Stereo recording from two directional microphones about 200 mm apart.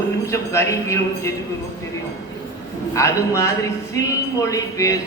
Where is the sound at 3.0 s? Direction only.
15° left (ahead or behind).